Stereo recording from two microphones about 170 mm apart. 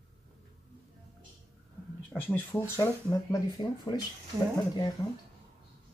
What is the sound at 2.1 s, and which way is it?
Speech, 10° left (ahead or behind).